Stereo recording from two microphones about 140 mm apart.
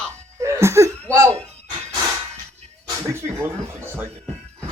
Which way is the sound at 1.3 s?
45° right (ahead or behind).